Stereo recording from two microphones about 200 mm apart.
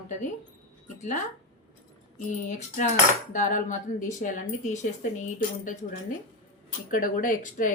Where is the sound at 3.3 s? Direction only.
40° left (ahead or behind).